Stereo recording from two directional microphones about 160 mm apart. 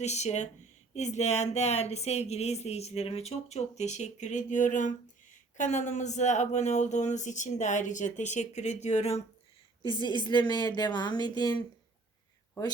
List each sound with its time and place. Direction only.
0.0 s speech: 45° left (ahead or behind)
9.8 s a woman's voice: 30° left (ahead or behind)